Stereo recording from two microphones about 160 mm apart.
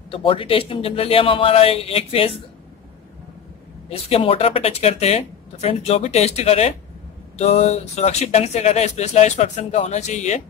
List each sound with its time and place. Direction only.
0.1 s speech: 35° left (ahead or behind)
3.9 s speech: 40° left (ahead or behind)